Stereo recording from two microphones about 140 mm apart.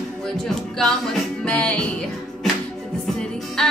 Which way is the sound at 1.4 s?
10° left (ahead or behind).